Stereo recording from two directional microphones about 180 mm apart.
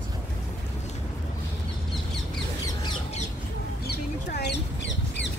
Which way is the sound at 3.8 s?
65° left (ahead or behind).